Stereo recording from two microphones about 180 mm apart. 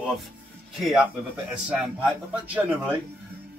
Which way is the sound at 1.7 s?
5° right (ahead or behind).